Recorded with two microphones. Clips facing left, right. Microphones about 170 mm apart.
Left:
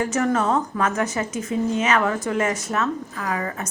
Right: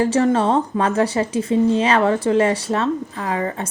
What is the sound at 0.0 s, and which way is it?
A woman's voice, 30° right (ahead or behind).